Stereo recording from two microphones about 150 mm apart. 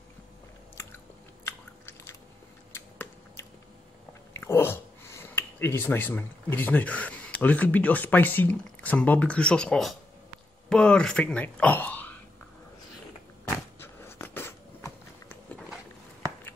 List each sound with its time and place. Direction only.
1.4 s chewing: 15° left (ahead or behind)
2.7 s arrow: 15° left (ahead or behind)
4.3 s speech: 15° left (ahead or behind)
13.7 s a sound: 15° left (ahead or behind)